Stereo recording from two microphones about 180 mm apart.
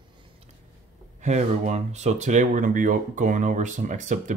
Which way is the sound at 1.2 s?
40° right (ahead or behind).